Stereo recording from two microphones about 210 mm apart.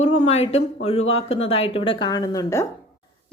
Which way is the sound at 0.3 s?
30° left (ahead or behind).